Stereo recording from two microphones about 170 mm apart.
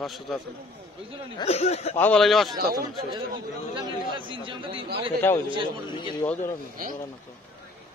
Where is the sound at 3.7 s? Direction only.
25° right (ahead or behind).